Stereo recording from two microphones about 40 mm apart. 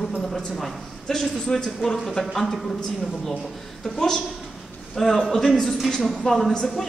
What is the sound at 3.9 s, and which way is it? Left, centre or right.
A woman's voice, centre.